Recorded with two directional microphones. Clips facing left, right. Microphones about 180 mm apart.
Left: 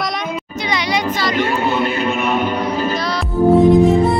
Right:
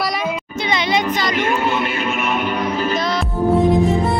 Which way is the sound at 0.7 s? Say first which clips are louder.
Right 1 dB; 25° right (ahead or behind).